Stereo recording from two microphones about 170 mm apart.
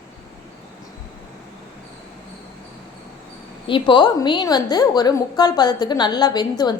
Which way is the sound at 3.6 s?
30° left (ahead or behind).